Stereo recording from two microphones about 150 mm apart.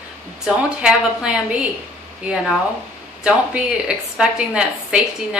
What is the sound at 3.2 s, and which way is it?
A woman's voice, 5° right (ahead or behind).